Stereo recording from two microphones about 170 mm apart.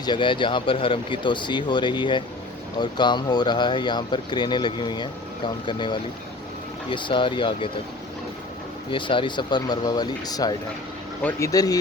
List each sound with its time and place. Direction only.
0.0 s speech: 25° left (ahead or behind)
8.9 s speech: 30° left (ahead or behind)